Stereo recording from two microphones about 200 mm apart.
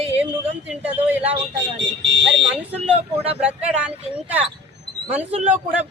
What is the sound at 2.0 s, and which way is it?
Speech, 65° right (ahead or behind).